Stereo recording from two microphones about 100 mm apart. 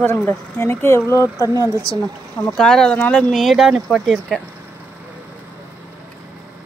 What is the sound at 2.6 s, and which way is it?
Speech, 5° left (ahead or behind).